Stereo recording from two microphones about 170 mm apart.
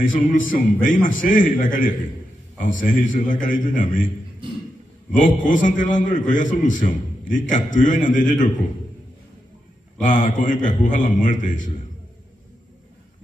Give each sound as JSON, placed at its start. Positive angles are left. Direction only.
{"t": 0.0, "sound": "a man's voice", "side_deg": 50}
{"t": 5.1, "sound": "a man's voice", "side_deg": 50}
{"t": 10.0, "sound": "a man's voice", "side_deg": 50}